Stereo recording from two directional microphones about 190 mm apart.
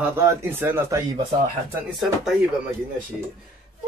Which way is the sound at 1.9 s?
Centre (ahead or behind).